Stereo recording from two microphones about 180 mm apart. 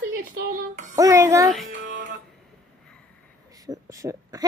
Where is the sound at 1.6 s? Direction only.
50° right (ahead or behind).